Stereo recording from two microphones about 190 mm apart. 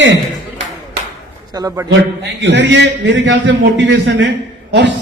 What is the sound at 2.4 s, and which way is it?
A man's voice, 65° right (ahead or behind).